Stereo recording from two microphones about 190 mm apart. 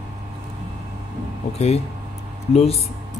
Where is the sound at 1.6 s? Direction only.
35° left (ahead or behind).